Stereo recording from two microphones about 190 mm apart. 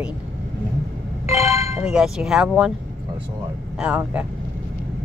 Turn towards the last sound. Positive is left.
turn(degrees=-5)  # may be behind; listen again after turning